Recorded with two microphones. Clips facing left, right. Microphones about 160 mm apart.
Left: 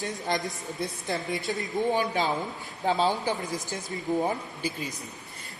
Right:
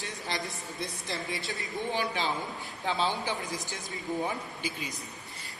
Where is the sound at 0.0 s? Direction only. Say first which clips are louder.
Left 6 dB; 50° left (ahead or behind).